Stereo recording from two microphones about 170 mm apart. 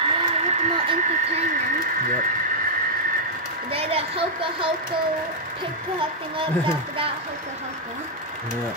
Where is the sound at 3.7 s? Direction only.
35° right (ahead or behind).